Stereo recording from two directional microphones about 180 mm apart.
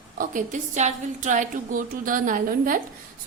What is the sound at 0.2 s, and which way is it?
A woman's voice, 45° right (ahead or behind).